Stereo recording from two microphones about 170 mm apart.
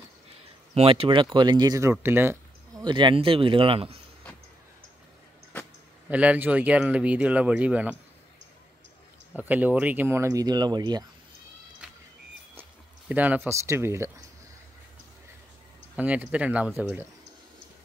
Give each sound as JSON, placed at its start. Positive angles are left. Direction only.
{"t": 0.7, "sound": "speech", "side_deg": -35}
{"t": 2.8, "sound": "speech", "side_deg": -30}
{"t": 6.0, "sound": "speech", "side_deg": -10}
{"t": 9.3, "sound": "speech", "side_deg": -10}
{"t": 11.8, "sound": "music", "side_deg": -5}
{"t": 13.1, "sound": "speech", "side_deg": -10}
{"t": 16.0, "sound": "speech", "side_deg": -10}